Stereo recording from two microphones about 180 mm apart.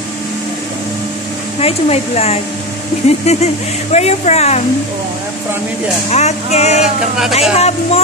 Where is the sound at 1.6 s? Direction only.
35° left (ahead or behind).